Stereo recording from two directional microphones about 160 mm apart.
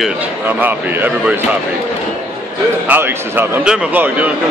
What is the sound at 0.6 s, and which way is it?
Speech, 10° right (ahead or behind).